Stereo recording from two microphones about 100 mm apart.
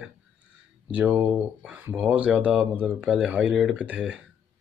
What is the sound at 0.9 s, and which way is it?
Speech, 15° right (ahead or behind).